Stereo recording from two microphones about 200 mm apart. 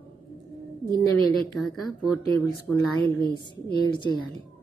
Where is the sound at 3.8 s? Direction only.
20° left (ahead or behind).